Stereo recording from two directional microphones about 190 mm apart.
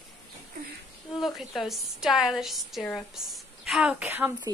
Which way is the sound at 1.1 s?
Centre (ahead or behind).